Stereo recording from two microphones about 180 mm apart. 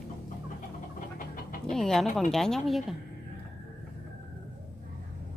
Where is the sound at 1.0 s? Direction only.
50° left (ahead or behind).